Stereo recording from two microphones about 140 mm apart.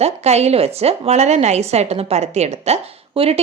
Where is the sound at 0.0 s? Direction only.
50° right (ahead or behind).